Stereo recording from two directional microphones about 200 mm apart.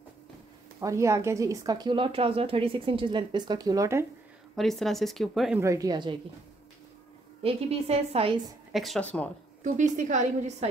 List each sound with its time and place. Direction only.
0.7 s a woman's voice: 15° right (ahead or behind)
4.6 s speech: centre (ahead or behind)
5.6 s a woman's voice: 15° right (ahead or behind)
7.4 s a woman's voice: 30° right (ahead or behind)
8.7 s speech: centre (ahead or behind)
9.6 s a woman's voice: 40° right (ahead or behind)